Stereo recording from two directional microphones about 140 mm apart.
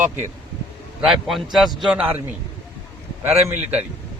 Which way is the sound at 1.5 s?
Centre (ahead or behind).